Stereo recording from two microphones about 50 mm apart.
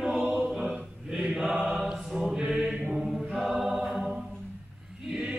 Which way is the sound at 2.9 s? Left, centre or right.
Centre.